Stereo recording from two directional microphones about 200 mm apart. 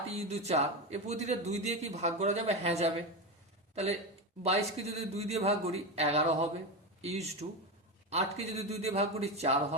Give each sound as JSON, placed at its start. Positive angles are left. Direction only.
{"t": 0.1, "sound": "a man's voice", "side_deg": -30}
{"t": 4.4, "sound": "a man's voice", "side_deg": -30}